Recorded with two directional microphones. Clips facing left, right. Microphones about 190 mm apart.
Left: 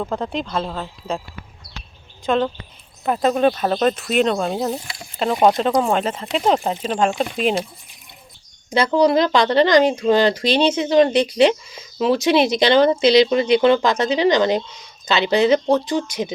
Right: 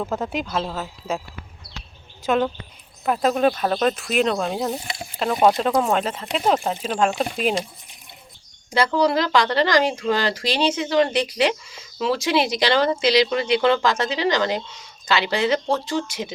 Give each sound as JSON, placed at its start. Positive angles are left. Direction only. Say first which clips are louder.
{"t": 0.0, "sound": "speech", "louder": "left 1 dB", "side_deg": -5}
{"t": 2.2, "sound": "speech", "louder": "left 1 dB", "side_deg": -5}
{"t": 5.8, "sound": "speech", "louder": "left 2 dB", "side_deg": 0}
{"t": 8.7, "sound": "speech", "louder": "left 4 dB", "side_deg": 20}